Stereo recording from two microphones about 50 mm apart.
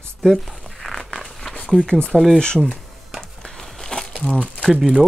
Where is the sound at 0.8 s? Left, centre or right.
Centre.